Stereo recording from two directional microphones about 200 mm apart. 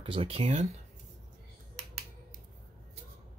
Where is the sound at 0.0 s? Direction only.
25° right (ahead or behind).